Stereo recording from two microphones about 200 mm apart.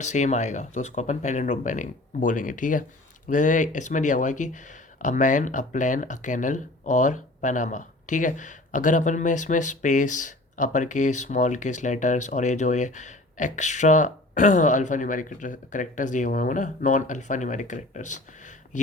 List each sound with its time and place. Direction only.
0.0 s speech: 35° left (ahead or behind)